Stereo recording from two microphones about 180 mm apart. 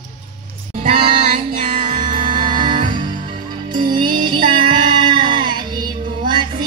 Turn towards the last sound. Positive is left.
turn(degrees=-25)  # may be behind; listen again after turning